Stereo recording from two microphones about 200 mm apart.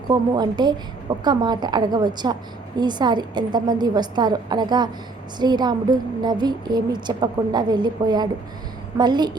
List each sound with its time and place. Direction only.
0.1 s a woman's voice: 20° right (ahead or behind)